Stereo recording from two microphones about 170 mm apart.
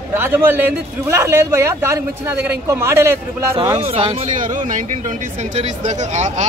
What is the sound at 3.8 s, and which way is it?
Speech, 30° right (ahead or behind).